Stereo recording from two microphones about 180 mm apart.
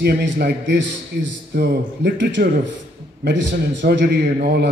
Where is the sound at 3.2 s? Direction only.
85° right; by 4.7 s 65° right (ahead or behind).